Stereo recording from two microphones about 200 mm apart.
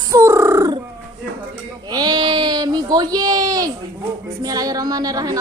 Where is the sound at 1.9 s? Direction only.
20° right (ahead or behind).